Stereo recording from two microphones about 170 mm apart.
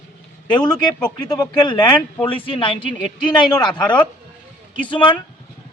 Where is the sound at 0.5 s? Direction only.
25° left (ahead or behind).